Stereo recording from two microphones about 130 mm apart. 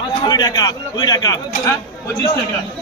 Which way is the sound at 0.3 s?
30° left (ahead or behind).